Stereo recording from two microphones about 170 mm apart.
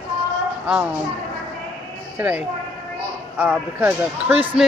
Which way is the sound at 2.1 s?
10° right (ahead or behind).